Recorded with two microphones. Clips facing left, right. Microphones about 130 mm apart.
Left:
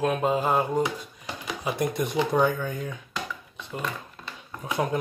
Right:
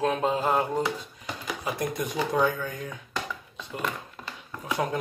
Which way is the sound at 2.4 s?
20° left (ahead or behind).